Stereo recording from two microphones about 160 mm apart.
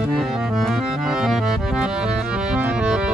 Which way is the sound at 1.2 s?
Centre (ahead or behind).